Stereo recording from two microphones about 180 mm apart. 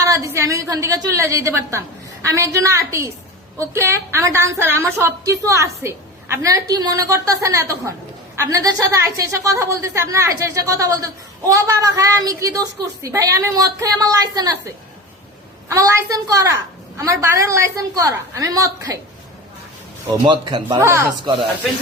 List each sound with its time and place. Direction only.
0.0 s a woman's voice: 15° right (ahead or behind)
15.7 s a woman's voice: 15° right (ahead or behind)
20.2 s a woman's voice: 25° right (ahead or behind)